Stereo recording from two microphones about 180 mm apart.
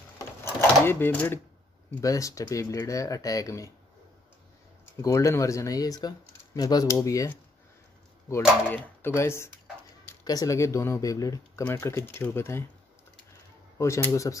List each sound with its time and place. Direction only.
0.2 s drawer open or close: 15° left (ahead or behind)
2.0 s speech: 15° left (ahead or behind)
5.0 s speech: 15° left (ahead or behind)
13.7 s speech: 15° left (ahead or behind)